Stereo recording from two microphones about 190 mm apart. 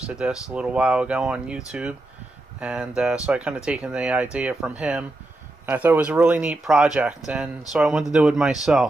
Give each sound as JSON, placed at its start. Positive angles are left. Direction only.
{"t": 0.0, "sound": "speech", "side_deg": -5}